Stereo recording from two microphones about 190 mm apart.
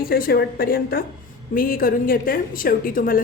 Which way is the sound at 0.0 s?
50° left (ahead or behind).